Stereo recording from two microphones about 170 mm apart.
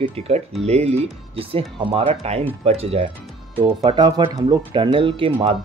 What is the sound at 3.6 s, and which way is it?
Speech, 25° right (ahead or behind).